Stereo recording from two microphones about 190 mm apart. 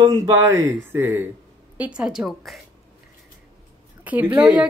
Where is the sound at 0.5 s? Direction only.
15° right (ahead or behind).